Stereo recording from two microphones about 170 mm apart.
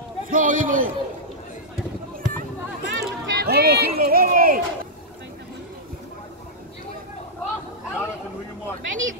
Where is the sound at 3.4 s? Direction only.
65° right (ahead or behind).